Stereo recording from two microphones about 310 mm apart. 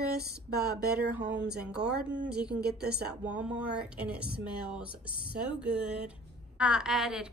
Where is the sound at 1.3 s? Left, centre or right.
Right.